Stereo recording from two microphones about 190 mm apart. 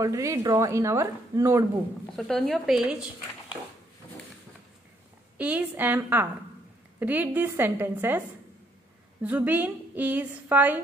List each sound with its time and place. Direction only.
0.0 s a woman's voice: 15° right (ahead or behind)
2.0 s speech: centre (ahead or behind)
5.4 s a woman's voice: 10° right (ahead or behind)
9.2 s a woman's voice: 5° right (ahead or behind)